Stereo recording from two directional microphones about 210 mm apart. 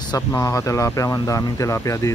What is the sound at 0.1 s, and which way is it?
Speech, 15° left (ahead or behind).